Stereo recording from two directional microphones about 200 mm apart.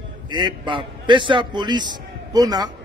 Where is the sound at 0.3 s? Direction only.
25° right (ahead or behind).